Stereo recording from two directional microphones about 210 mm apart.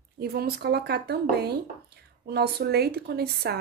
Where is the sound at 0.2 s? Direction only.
45° right (ahead or behind).